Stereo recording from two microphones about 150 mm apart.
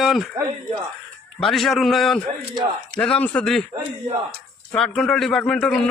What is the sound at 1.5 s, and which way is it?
A man's voice, centre (ahead or behind).